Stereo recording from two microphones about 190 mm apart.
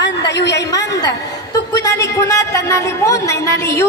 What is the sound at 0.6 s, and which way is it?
A woman's voice, 20° left (ahead or behind).